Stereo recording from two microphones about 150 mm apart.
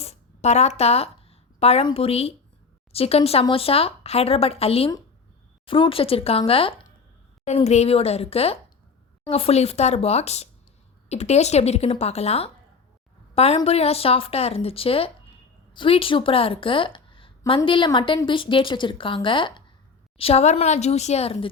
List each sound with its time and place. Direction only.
0.0 s a woman's voice: 45° left (ahead or behind)